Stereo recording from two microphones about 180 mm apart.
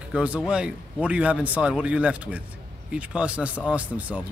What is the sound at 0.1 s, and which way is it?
Speech, 5° right (ahead or behind).